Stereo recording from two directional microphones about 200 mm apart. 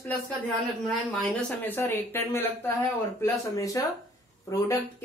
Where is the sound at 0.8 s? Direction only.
Centre (ahead or behind).